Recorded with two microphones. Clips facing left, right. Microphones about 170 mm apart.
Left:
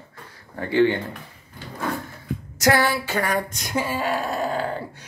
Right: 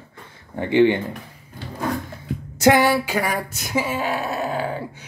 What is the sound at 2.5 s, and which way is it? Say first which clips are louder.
Speech: right 4 dB; 25° right (ahead or behind).